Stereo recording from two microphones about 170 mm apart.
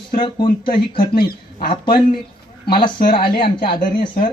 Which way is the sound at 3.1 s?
30° left (ahead or behind).